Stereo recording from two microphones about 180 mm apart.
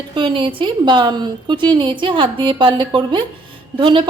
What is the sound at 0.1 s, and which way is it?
A woman's voice, 30° right (ahead or behind).